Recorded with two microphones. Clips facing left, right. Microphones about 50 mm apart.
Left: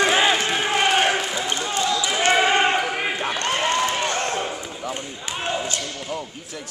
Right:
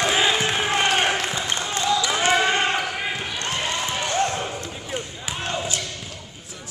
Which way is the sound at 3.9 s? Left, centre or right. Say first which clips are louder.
Even; left.